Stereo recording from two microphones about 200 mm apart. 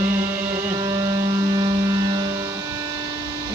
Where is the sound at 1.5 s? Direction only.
20° right (ahead or behind).